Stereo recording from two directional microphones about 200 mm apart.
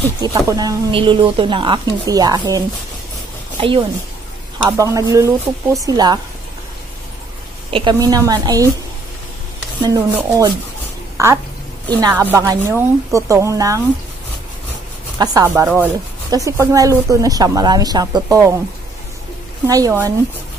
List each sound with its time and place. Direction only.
0.2 s speech: 20° right (ahead or behind)
4.6 s speech: 15° right (ahead or behind)
7.7 s speech: 20° right (ahead or behind)
9.8 s speech: 15° right (ahead or behind)
15.1 s speech: 20° right (ahead or behind)
19.7 s speech: 15° right (ahead or behind)